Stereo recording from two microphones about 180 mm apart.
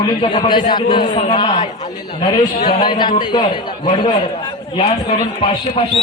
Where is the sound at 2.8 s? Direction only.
25° left (ahead or behind).